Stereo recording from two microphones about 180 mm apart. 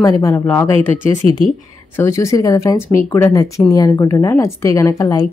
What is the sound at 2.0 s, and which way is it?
A woman's voice, 15° left (ahead or behind).